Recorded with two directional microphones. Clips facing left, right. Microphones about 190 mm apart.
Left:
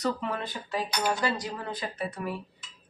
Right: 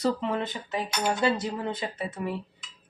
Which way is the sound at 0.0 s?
25° right (ahead or behind).